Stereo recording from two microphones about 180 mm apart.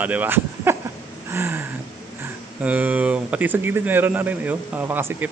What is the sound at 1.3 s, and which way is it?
Speech, 15° right (ahead or behind).